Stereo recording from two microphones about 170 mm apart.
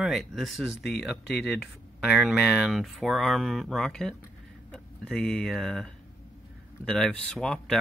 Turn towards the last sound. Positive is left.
turn(degrees=5)  # may be behind; listen again after turning